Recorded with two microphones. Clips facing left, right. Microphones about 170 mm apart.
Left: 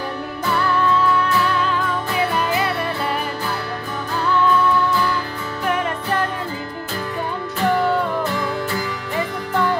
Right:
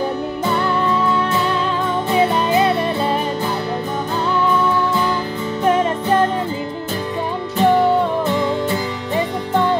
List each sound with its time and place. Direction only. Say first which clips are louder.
0.5 s music: even; 20° right (ahead or behind)
5.7 s music: right 6 dB; 25° right (ahead or behind)
7.5 s music: right 5 dB; 20° right (ahead or behind)